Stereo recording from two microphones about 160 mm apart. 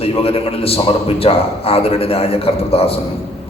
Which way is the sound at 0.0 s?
35° left (ahead or behind).